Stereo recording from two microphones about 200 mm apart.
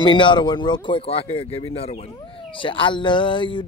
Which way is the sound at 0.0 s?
25° left (ahead or behind).